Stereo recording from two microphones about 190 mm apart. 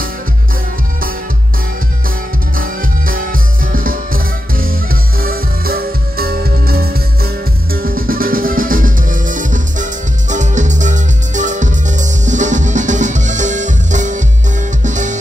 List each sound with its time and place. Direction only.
2.5 s music: 50° right (ahead or behind)